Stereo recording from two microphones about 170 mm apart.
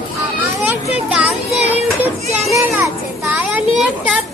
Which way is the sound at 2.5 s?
20° right (ahead or behind).